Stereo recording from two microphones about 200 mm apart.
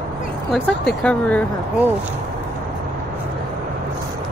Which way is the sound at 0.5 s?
5° left (ahead or behind).